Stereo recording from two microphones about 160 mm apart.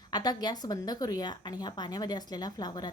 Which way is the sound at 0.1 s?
25° left (ahead or behind).